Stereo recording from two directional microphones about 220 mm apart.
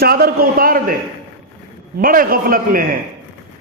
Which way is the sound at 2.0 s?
40° right (ahead or behind).